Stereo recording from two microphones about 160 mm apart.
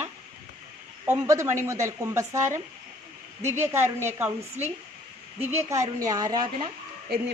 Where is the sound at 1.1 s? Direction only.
15° right (ahead or behind).